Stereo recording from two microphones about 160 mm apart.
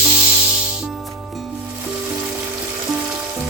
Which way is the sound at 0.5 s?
5° right (ahead or behind).